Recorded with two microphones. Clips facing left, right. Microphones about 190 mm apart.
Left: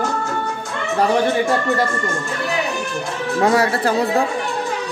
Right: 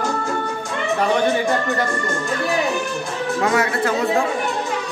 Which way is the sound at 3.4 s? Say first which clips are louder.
Left 4 dB; 35° left (ahead or behind).